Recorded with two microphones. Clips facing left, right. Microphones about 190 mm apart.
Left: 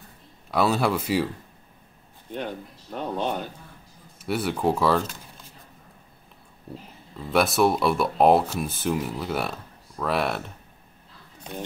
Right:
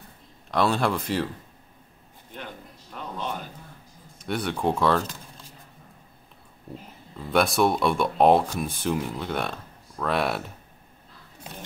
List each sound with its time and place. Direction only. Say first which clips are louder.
0.5 s speech: left 1 dB; 5° left (ahead or behind)
2.9 s speech: left 6 dB; 30° left (ahead or behind)
4.2 s speech: left 2 dB; 5° left (ahead or behind)
7.2 s speech: left 1 dB; centre (ahead or behind)